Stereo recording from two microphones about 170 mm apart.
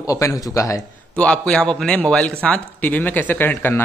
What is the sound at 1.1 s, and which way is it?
Speech, 5° left (ahead or behind).